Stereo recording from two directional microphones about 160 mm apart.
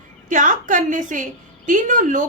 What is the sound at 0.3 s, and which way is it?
A woman's voice, 55° right (ahead or behind).